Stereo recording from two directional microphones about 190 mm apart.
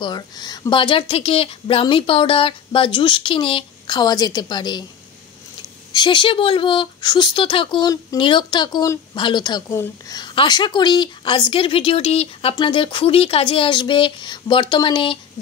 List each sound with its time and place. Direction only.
0.0 s speech: 20° left (ahead or behind)
5.9 s speech: 25° left (ahead or behind)